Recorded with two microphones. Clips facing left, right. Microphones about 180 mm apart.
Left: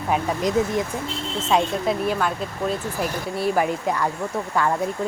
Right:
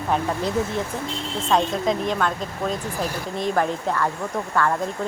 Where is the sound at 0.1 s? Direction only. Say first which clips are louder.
Left 2 dB; 10° left (ahead or behind).